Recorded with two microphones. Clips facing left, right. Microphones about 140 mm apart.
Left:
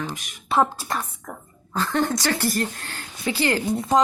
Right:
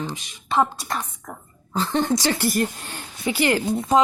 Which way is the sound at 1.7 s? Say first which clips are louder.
Right 1 dB; 20° right (ahead or behind).